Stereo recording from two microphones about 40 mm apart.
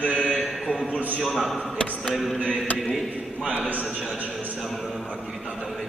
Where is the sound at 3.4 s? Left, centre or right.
Right.